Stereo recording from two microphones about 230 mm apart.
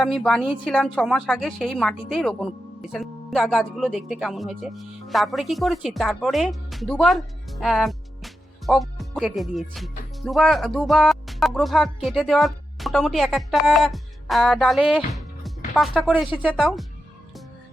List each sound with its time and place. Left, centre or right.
0.0 s speech: centre